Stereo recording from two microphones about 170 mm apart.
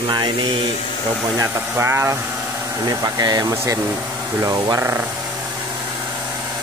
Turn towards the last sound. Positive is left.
turn(degrees=-15)  # may be behind; listen again after turning